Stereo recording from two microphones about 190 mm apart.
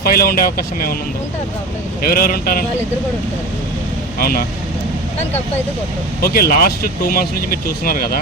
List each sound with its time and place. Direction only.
0.0 s speech: 50° left (ahead or behind)
2.0 s speech: 50° left (ahead or behind)
4.2 s speech: 55° left (ahead or behind)
6.2 s speech: 50° left (ahead or behind)